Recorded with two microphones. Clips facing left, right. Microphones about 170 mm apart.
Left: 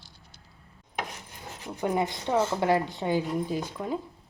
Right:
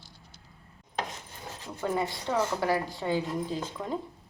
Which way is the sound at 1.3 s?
15° left (ahead or behind).